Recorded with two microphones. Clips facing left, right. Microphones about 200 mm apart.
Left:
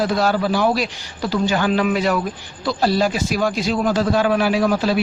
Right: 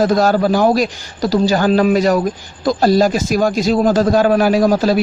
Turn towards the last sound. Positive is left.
turn(degrees=-40)  # may be behind; listen again after turning